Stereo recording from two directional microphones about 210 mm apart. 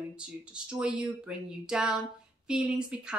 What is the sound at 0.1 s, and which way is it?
A woman's voice, 5° right (ahead or behind).